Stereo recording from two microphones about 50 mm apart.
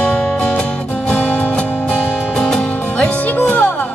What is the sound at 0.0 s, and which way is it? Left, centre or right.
Music, centre.